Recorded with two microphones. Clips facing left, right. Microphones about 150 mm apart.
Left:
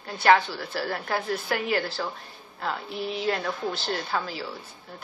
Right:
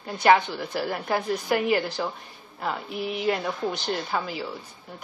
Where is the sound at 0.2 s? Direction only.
15° right (ahead or behind).